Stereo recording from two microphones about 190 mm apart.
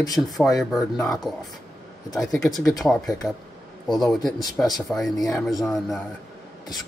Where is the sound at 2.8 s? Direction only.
Centre (ahead or behind).